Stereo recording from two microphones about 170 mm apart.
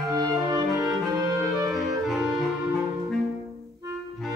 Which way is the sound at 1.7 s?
Centre (ahead or behind).